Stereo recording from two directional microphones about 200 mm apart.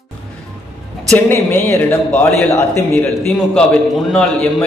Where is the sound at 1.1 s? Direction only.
10° left (ahead or behind).